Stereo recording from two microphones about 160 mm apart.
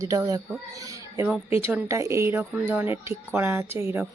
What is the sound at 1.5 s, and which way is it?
Speech, 15° right (ahead or behind).